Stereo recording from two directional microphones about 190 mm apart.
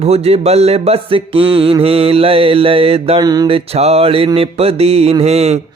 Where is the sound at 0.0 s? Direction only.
30° right (ahead or behind).